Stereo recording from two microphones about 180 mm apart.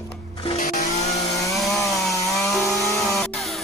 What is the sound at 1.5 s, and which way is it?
Wood, centre (ahead or behind).